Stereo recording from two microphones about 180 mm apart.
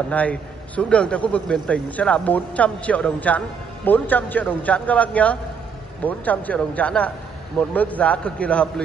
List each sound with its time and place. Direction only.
0.1 s a man's voice: 5° left (ahead or behind)